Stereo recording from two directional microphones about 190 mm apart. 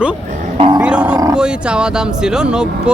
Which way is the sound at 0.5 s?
30° right (ahead or behind).